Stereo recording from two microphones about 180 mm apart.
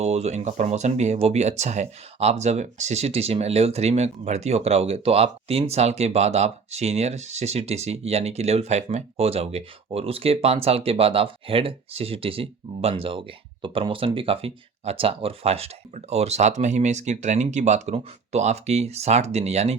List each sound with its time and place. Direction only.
0.0 s speech: 35° right (ahead or behind)